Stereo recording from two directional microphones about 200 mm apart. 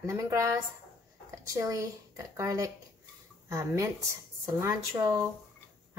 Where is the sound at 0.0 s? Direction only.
15° right (ahead or behind).